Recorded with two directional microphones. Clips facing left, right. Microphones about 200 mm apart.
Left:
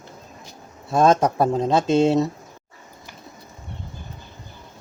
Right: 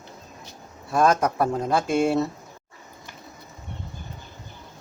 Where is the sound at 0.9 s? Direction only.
25° left (ahead or behind).